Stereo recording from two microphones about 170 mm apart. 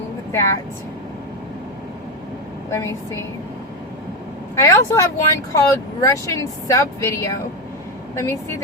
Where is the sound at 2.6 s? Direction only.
15° left (ahead or behind).